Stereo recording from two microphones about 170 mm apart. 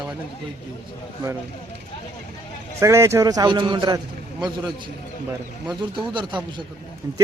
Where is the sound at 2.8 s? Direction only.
15° right (ahead or behind).